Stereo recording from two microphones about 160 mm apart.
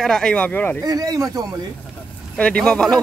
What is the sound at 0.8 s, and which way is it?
Speech, 25° right (ahead or behind).